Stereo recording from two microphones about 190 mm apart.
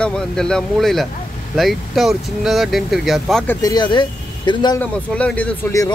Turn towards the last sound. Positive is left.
turn(degrees=10)  # may be behind; listen again after turning